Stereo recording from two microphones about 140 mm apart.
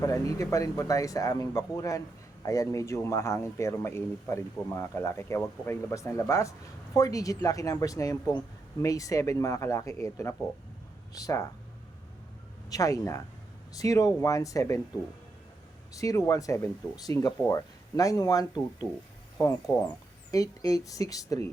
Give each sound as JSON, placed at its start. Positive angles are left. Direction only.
{"t": 0.0, "sound": "speech", "side_deg": 25}
{"t": 12.7, "sound": "speech", "side_deg": 25}
{"t": 16.0, "sound": "speech", "side_deg": 20}